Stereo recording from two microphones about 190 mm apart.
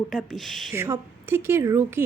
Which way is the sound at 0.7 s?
15° right (ahead or behind).